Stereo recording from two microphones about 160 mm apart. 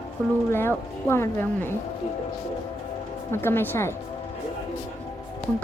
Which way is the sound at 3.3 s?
15° left (ahead or behind).